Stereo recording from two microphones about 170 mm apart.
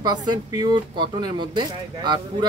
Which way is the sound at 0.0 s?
25° right (ahead or behind).